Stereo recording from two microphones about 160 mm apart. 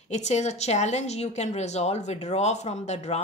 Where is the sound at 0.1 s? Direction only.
45° left (ahead or behind).